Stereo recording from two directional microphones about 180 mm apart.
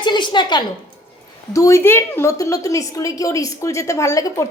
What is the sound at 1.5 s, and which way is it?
A woman's voice, 15° left (ahead or behind).